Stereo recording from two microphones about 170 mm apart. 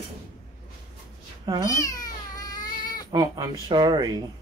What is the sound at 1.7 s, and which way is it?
Cat, 20° left (ahead or behind).